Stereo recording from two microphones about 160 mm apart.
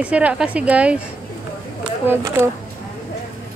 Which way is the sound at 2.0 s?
15° right (ahead or behind).